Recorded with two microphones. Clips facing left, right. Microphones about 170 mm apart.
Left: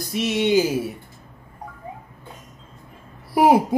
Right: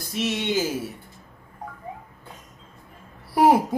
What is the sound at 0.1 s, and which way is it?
Speech, 15° left (ahead or behind).